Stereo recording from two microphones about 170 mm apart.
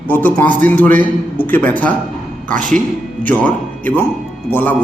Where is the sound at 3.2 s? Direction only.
10° left (ahead or behind).